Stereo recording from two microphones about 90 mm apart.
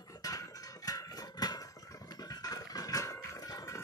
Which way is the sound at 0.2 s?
40° left (ahead or behind).